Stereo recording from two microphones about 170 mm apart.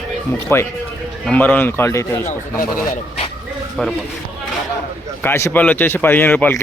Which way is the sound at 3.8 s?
5° left (ahead or behind).